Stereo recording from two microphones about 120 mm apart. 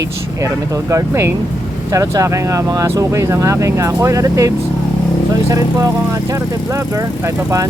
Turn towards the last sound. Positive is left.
turn(degrees=-25)  # may be behind; listen again after turning